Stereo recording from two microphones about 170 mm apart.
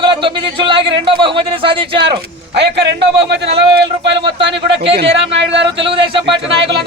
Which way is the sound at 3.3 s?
80° right.